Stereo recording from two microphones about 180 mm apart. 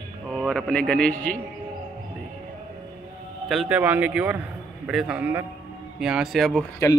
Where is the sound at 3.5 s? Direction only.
5° right (ahead or behind).